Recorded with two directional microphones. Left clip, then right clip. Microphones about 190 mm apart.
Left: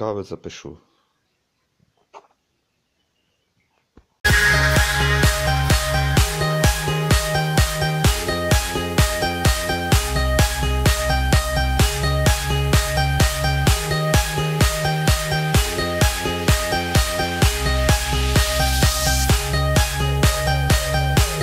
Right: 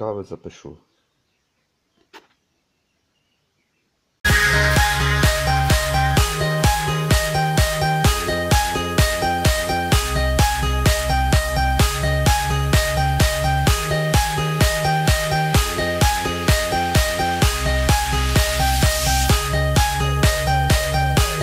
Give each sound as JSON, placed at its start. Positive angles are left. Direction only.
{"t": 0.0, "sound": "speech", "side_deg": 0}
{"t": 4.7, "sound": "music", "side_deg": 0}